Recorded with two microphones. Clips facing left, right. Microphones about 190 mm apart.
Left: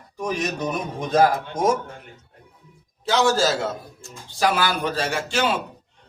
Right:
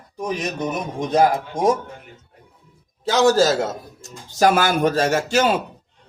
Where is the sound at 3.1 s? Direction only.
40° right (ahead or behind).